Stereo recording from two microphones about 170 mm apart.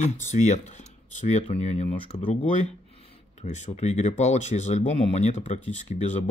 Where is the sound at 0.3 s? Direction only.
40° left (ahead or behind).